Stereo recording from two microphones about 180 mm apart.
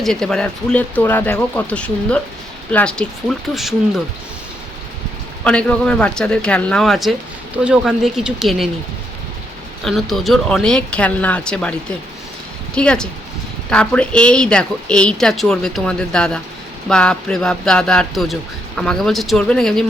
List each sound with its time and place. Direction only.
0.0 s speech: centre (ahead or behind)
5.4 s speech: 5° left (ahead or behind)
9.8 s speech: centre (ahead or behind)